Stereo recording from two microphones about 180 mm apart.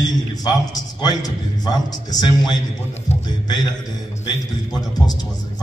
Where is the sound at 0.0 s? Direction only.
20° left (ahead or behind).